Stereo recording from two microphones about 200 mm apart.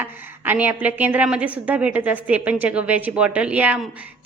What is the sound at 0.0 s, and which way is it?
A woman's voice, 10° right (ahead or behind).